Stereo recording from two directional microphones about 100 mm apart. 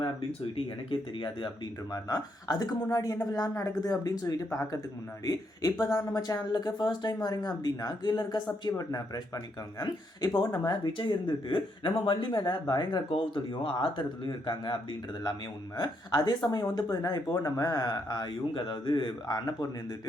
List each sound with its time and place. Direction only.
0.0 s speech: 70° left (ahead or behind); by 13.0 s 45° left (ahead or behind)
13.1 s speech: 55° left (ahead or behind)
15.8 s speech: 40° left (ahead or behind)
17.2 s speech: 30° left (ahead or behind)